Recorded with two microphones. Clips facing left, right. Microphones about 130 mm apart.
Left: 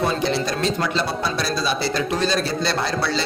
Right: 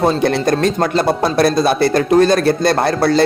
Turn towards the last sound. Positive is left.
turn(degrees=-50)  # may be behind; listen again after turning